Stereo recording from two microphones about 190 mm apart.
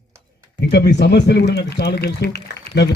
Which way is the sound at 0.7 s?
60° left (ahead or behind).